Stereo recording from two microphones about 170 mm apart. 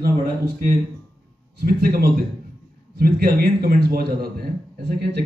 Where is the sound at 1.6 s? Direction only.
65° right (ahead or behind).